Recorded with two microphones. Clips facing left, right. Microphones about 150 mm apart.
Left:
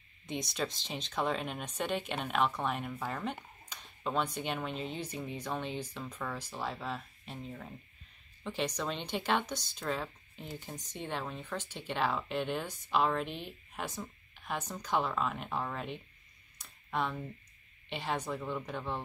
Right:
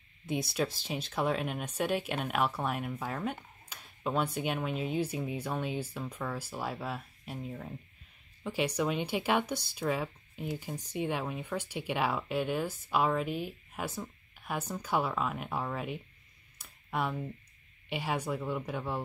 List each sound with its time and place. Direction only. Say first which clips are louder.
0.3 s speech: right 4 dB; 5° right (ahead or behind)
16.5 s a sound: right 1 dB; 10° right (ahead or behind)
17.8 s speech: right 2 dB; 10° right (ahead or behind)